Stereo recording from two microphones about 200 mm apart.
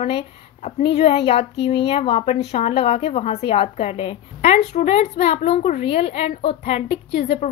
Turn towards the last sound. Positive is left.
turn(degrees=30)  # may be behind; listen again after turning